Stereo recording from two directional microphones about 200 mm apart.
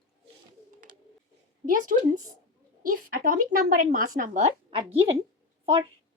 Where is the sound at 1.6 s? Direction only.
40° right (ahead or behind).